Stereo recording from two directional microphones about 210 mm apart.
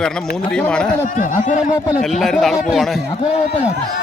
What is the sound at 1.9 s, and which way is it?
Speech, centre (ahead or behind).